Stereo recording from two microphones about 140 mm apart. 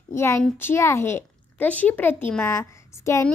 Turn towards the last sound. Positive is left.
turn(degrees=20)  # may be behind; listen again after turning